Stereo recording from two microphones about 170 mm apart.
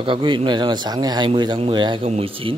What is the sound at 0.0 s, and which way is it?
Speech, 30° right (ahead or behind).